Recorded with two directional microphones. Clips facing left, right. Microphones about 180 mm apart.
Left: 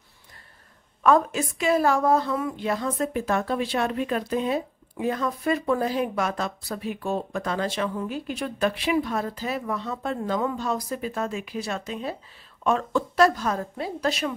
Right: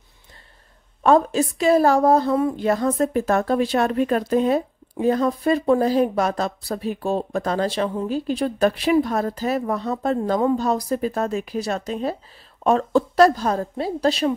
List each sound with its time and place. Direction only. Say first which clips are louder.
1.0 s speech: right 4 dB; 30° right (ahead or behind)